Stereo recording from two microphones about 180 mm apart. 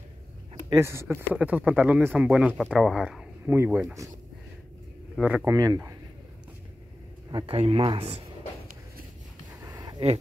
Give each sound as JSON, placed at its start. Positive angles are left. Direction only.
{"t": 0.7, "sound": "speech", "side_deg": -15}
{"t": 5.1, "sound": "speech", "side_deg": -5}
{"t": 5.5, "sound": "speech", "side_deg": -20}
{"t": 7.2, "sound": "speech", "side_deg": -30}
{"t": 9.6, "sound": "a sound", "side_deg": -20}